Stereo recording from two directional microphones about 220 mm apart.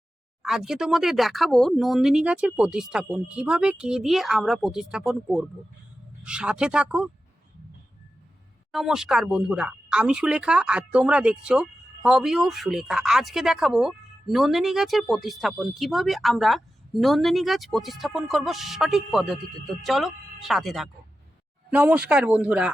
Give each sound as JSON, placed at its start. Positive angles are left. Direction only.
{"t": 0.4, "sound": "speech", "side_deg": 0}
{"t": 8.7, "sound": "speech", "side_deg": 0}